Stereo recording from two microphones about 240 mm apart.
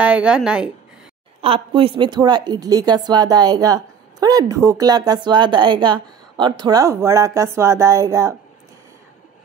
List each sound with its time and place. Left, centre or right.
0.0 s a woman's voice: centre
1.4 s a woman's voice: right